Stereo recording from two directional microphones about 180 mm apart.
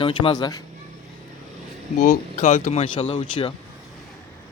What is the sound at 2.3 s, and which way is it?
Speech, 35° left (ahead or behind).